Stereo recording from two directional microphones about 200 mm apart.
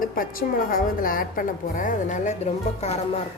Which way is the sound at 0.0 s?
45° left (ahead or behind).